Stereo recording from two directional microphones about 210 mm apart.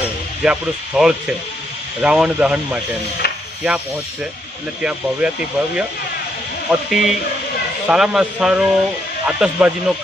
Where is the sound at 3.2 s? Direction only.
50° left (ahead or behind).